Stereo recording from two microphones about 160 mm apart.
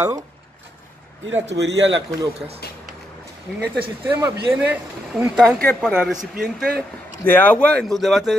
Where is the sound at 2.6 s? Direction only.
80° left.